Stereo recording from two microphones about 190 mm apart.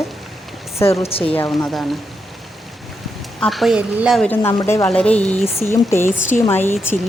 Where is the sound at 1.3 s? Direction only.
15° left (ahead or behind).